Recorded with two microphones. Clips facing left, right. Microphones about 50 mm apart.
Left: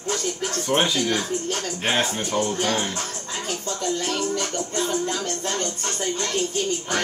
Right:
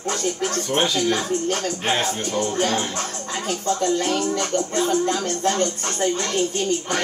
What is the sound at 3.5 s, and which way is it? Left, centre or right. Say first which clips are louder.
Speech: right 6 dB; right.